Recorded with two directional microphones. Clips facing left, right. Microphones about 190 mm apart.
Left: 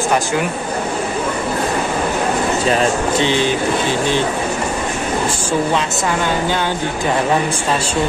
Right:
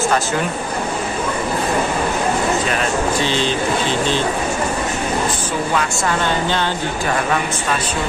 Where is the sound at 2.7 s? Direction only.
30° left (ahead or behind).